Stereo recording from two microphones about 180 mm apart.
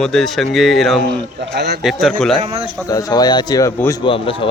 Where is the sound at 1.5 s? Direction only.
65° right (ahead or behind).